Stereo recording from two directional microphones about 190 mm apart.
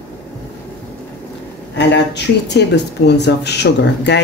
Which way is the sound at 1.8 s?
65° left (ahead or behind).